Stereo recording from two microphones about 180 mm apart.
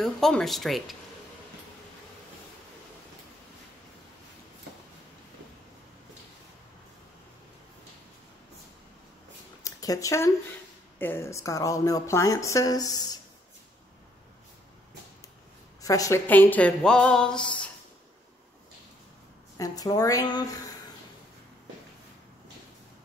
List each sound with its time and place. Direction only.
0.0 s speech: centre (ahead or behind)
9.6 s a sound: 20° left (ahead or behind)
11.0 s speech: 10° left (ahead or behind)
15.8 s speech: 20° left (ahead or behind)
19.5 s speech: 20° left (ahead or behind)